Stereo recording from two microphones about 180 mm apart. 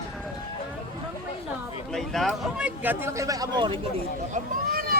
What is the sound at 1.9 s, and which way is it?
Speech, centre (ahead or behind).